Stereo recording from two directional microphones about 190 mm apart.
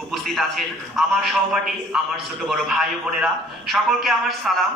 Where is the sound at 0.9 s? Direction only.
Centre (ahead or behind).